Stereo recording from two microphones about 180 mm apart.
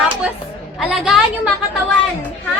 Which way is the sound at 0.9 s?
Centre (ahead or behind).